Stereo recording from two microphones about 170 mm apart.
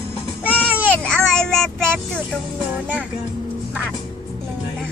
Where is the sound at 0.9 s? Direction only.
5° left (ahead or behind).